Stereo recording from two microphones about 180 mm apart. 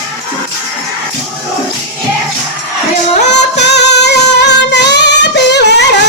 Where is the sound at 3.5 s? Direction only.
70° left (ahead or behind).